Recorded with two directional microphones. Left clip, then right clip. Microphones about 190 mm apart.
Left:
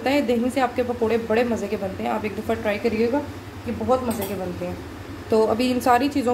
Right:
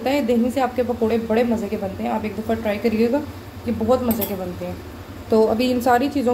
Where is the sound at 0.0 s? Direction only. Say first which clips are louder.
Right 1 dB; centre (ahead or behind).